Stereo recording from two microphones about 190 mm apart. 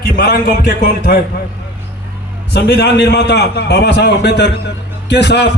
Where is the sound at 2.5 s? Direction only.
60° left (ahead or behind).